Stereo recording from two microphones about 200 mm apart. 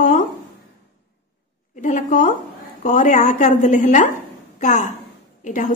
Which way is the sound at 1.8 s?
40° left (ahead or behind).